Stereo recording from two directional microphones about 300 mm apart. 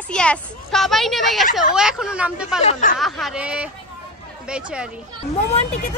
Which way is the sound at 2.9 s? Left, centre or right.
Centre.